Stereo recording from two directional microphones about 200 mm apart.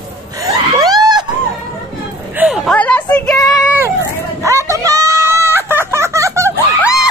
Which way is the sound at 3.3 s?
15° left (ahead or behind).